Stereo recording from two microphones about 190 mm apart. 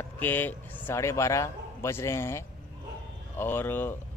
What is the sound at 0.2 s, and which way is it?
Speech, 10° left (ahead or behind).